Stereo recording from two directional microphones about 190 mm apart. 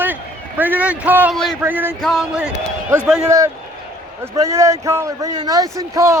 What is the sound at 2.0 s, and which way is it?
A man's voice, centre (ahead or behind).